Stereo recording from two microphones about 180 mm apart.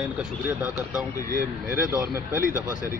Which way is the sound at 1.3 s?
50° right (ahead or behind).